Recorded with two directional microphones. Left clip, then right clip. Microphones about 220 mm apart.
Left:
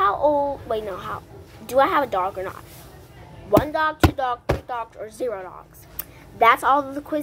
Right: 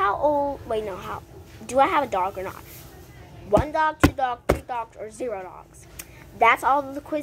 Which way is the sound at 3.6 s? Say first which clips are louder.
Even; 5° left (ahead or behind).